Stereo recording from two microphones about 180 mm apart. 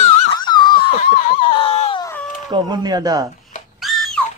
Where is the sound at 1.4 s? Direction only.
30° left (ahead or behind).